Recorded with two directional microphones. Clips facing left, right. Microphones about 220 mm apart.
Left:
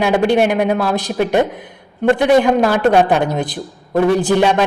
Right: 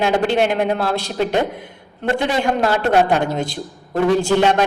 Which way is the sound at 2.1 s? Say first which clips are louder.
Left 7 dB; 15° left (ahead or behind).